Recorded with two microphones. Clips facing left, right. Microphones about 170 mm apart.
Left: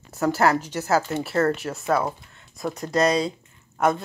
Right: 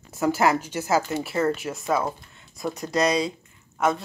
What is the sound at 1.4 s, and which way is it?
Speech, centre (ahead or behind).